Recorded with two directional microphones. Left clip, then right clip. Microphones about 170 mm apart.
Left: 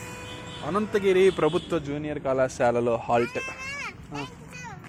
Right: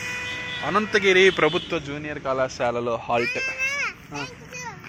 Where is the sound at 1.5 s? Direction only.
30° left (ahead or behind).